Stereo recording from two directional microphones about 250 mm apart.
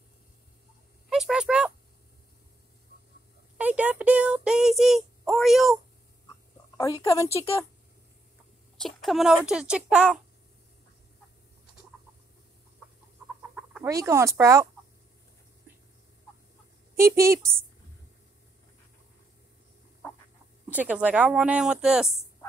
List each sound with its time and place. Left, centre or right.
1.1 s a sound: centre
3.5 s child singing: centre
6.8 s a woman's voice: centre
8.7 s a child's voice: centre
13.6 s speech: centre
16.9 s a woman's voice: centre
20.7 s speech: centre